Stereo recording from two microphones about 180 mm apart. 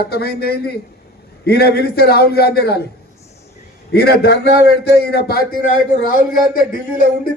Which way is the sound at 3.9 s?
65° left (ahead or behind).